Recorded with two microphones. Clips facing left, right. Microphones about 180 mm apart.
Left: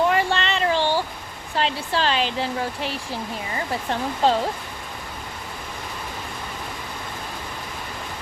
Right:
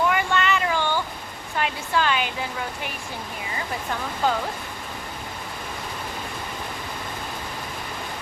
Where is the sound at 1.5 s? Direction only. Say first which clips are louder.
Left 1 dB; 30° left (ahead or behind).